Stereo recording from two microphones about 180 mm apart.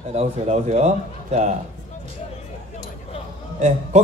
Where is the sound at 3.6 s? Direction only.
40° right (ahead or behind).